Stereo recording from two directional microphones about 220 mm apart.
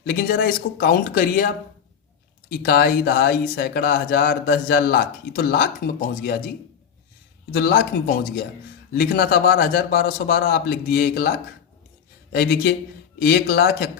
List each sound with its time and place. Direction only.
0.0 s speech: 45° left (ahead or behind)
2.5 s speech: 45° left (ahead or behind)
7.5 s speech: 45° left (ahead or behind)